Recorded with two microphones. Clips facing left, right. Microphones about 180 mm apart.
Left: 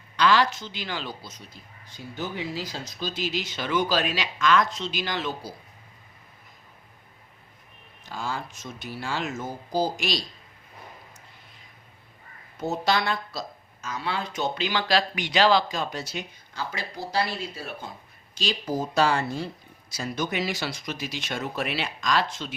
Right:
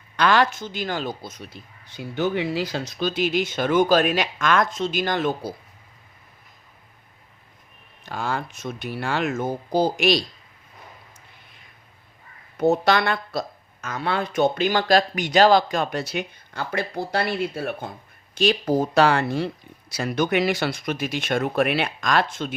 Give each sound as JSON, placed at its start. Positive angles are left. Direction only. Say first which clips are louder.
{"t": 0.2, "sound": "speech", "louder": "right 2 dB", "side_deg": -55}
{"t": 8.0, "sound": "speech", "louder": "right 5 dB", "side_deg": -65}
{"t": 12.5, "sound": "speech", "louder": "right 7 dB", "side_deg": -60}